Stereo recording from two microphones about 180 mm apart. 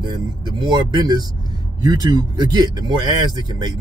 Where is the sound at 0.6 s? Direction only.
25° right (ahead or behind).